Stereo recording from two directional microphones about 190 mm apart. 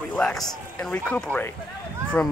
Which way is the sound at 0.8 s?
5° left (ahead or behind).